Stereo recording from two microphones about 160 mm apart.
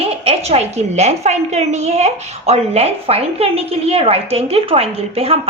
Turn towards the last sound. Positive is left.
turn(degrees=-40)  # may be behind; listen again after turning